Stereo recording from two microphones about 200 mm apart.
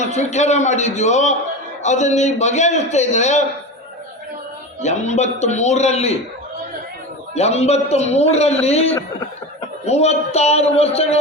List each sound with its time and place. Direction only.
0.0 s a man's voice: 35° left (ahead or behind)
4.8 s a man's voice: 35° left (ahead or behind)
7.3 s a man's voice: 30° left (ahead or behind)